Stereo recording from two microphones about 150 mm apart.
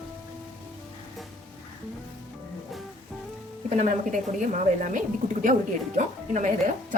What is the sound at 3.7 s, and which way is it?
A woman's voice, 50° right (ahead or behind).